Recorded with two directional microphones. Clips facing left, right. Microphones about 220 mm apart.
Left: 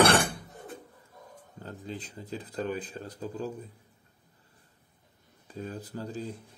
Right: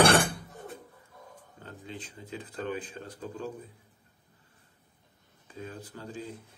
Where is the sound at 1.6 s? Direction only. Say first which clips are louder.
Left 4 dB; 40° left (ahead or behind).